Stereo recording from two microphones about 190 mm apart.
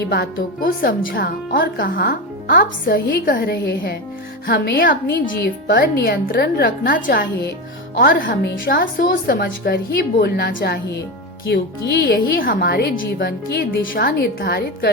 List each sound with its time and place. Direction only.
0.1 s a woman's voice: 50° left (ahead or behind)